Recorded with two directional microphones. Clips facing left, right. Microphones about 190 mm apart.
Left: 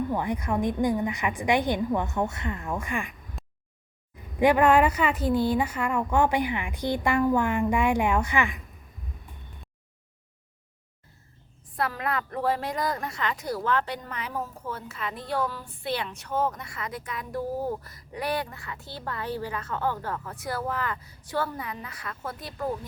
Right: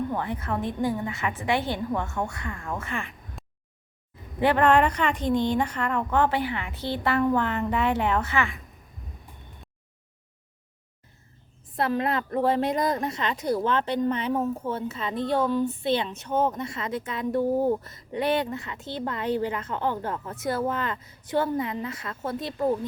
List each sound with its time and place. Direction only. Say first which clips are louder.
0.1 s a woman's voice: left 2 dB; 15° left (ahead or behind)
3.4 s a sound: even; centre (ahead or behind)
4.4 s a woman's voice: left 1 dB; 10° left (ahead or behind)
11.8 s a woman's voice: right 4 dB; 25° right (ahead or behind)